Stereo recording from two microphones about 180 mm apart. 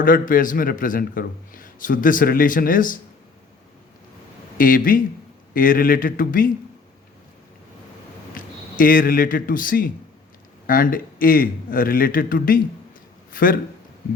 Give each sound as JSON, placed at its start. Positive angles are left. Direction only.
{"t": 0.0, "sound": "a man's voice", "side_deg": 50}
{"t": 4.5, "sound": "a man's voice", "side_deg": 50}
{"t": 8.4, "sound": "a man's voice", "side_deg": 50}